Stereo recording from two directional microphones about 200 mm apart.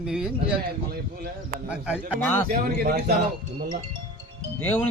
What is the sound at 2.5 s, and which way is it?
Speech, 50° right (ahead or behind).